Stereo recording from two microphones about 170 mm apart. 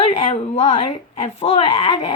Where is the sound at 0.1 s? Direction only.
40° left (ahead or behind).